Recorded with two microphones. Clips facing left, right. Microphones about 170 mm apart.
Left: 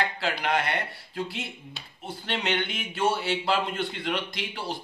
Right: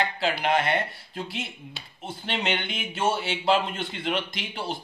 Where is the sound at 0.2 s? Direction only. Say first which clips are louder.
Right 3 dB; 25° right (ahead or behind).